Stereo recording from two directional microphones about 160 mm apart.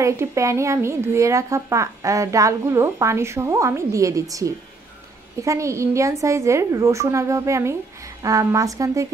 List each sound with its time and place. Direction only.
0.0 s speech: 20° right (ahead or behind)